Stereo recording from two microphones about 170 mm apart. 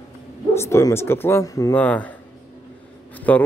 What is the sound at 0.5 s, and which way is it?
A man's voice, 15° left (ahead or behind).